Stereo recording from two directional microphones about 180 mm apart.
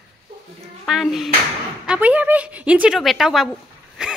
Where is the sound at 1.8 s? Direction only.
5° right (ahead or behind).